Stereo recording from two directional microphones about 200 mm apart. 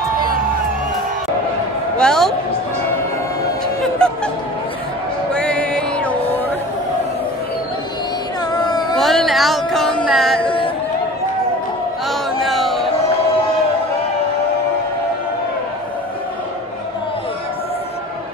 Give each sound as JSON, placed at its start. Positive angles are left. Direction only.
{"t": 2.0, "sound": "a man's voice", "side_deg": 5}
{"t": 4.0, "sound": "music", "side_deg": 5}
{"t": 5.3, "sound": "music", "side_deg": 5}
{"t": 8.5, "sound": "a sound", "side_deg": 20}
{"t": 8.9, "sound": "music", "side_deg": 0}
{"t": 12.1, "sound": "music", "side_deg": 0}